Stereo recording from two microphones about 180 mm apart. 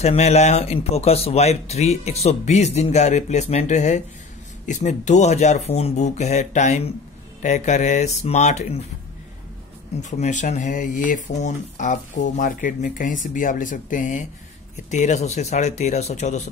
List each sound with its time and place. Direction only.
0.0 s speech: 35° left (ahead or behind)
10.0 s speech: 40° left (ahead or behind)